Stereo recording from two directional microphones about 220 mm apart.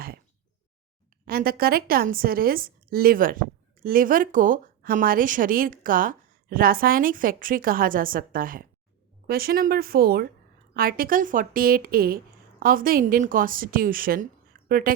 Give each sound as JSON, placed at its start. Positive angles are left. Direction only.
{"t": 1.2, "sound": "a woman's voice", "side_deg": -40}